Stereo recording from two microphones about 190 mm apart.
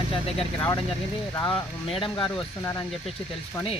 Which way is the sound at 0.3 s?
20° left (ahead or behind).